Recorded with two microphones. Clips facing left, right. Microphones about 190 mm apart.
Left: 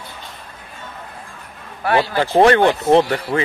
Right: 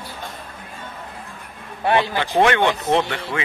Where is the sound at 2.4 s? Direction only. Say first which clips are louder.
Left 5 dB; 35° left (ahead or behind).